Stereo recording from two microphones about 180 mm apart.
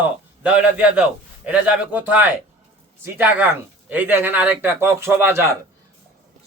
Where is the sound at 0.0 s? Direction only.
5° right (ahead or behind).